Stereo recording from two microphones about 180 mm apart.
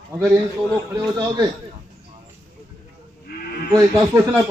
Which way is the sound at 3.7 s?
15° right (ahead or behind).